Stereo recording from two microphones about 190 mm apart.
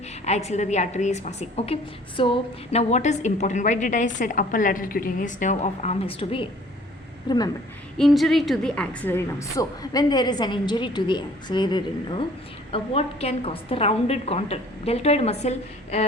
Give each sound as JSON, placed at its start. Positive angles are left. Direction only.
{"t": 0.3, "sound": "a woman's voice", "side_deg": 35}
{"t": 7.9, "sound": "a woman's voice", "side_deg": 0}